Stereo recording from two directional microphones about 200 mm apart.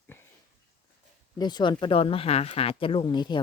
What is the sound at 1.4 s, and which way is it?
Speech, 20° left (ahead or behind).